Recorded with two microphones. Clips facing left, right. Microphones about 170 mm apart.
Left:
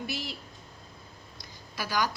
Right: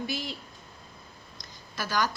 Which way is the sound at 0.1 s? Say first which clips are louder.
Right 2 dB; 5° left (ahead or behind).